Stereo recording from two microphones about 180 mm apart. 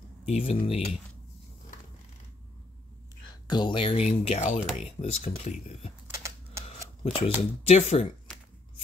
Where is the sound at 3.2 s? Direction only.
25° left (ahead or behind).